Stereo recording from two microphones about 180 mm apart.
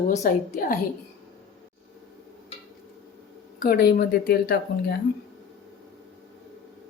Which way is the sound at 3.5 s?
55° left (ahead or behind).